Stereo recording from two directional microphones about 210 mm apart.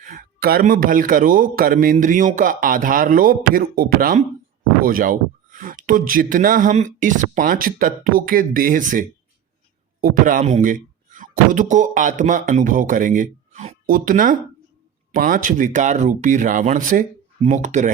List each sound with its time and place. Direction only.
0.0 s a man's voice: 40° right (ahead or behind)